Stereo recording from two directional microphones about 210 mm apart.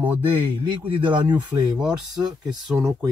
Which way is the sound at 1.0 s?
20° right (ahead or behind).